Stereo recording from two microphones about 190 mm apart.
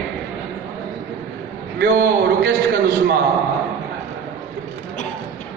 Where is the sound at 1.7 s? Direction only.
50° right (ahead or behind).